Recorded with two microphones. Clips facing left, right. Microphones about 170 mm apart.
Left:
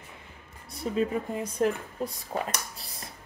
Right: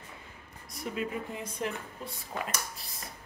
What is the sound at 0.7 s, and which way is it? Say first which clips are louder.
A woman's voice: left 7 dB; 30° left (ahead or behind).